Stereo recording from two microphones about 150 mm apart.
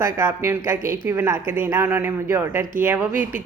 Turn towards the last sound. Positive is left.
turn(degrees=-15)  # may be behind; listen again after turning